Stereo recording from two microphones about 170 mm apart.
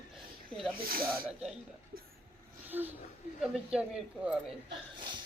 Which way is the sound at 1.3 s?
5° right (ahead or behind).